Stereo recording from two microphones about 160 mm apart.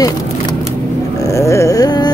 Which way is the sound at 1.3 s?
20° left (ahead or behind).